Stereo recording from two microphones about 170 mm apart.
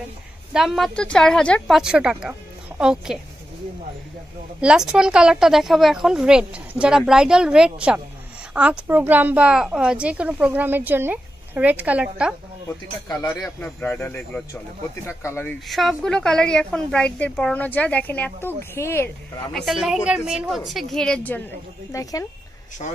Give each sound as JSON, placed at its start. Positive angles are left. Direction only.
{"t": 0.5, "sound": "a woman's voice", "side_deg": 0}
{"t": 4.6, "sound": "a woman's voice", "side_deg": -5}
{"t": 13.1, "sound": "speech", "side_deg": 20}
{"t": 13.6, "sound": "speech", "side_deg": 10}
{"t": 15.7, "sound": "a woman's voice", "side_deg": 0}
{"t": 19.5, "sound": "a woman's voice", "side_deg": 0}